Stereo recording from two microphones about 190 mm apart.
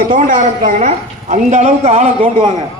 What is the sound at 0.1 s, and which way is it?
A woman's voice, 45° right (ahead or behind).